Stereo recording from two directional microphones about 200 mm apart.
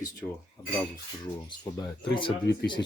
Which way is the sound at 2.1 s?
25° left (ahead or behind).